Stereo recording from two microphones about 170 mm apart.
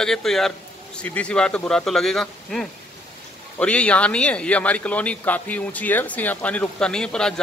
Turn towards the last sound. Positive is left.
turn(degrees=5)  # may be behind; listen again after turning